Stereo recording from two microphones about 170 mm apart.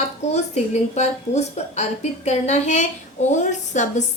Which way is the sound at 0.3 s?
40° left (ahead or behind).